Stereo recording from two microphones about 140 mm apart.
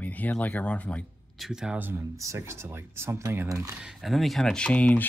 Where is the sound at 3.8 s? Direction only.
Centre (ahead or behind).